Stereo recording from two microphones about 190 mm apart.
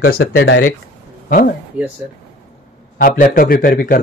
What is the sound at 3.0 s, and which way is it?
A man's voice, 50° left (ahead or behind).